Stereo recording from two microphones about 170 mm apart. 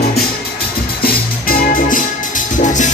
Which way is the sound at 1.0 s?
55° left (ahead or behind).